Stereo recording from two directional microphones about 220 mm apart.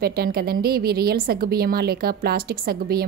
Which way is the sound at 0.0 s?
45° right (ahead or behind).